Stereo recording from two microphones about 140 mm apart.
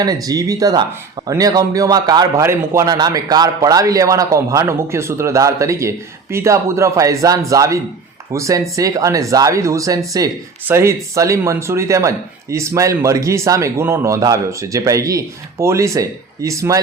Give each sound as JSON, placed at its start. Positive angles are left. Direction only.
{"t": 0.0, "sound": "speech", "side_deg": -25}